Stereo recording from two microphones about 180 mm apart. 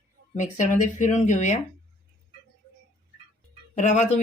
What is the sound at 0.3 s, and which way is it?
Speech, 45° left (ahead or behind).